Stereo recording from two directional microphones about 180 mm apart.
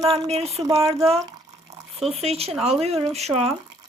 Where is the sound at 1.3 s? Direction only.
20° right (ahead or behind).